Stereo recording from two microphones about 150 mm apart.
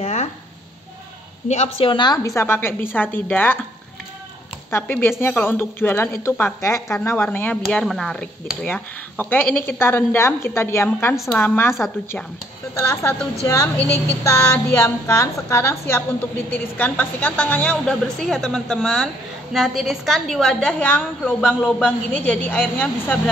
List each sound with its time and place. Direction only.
0.0 s a sound: 50° left (ahead or behind)
1.5 s a woman's voice: 50° left (ahead or behind)
1.9 s a woman's voice: 30° left (ahead or behind); by 3.5 s 10° left (ahead or behind)
4.6 s a woman's voice: 15° left (ahead or behind)
7.6 s a woman's voice: centre (ahead or behind)
12.7 s a woman's voice: 20° left (ahead or behind)